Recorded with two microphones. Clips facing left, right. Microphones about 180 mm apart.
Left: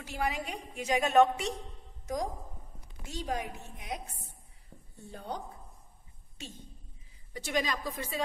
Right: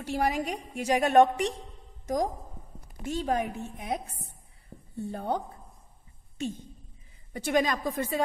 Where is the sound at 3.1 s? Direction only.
55° right (ahead or behind).